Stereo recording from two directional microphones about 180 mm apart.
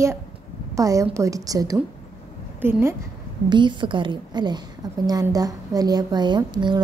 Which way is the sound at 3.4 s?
25° right (ahead or behind).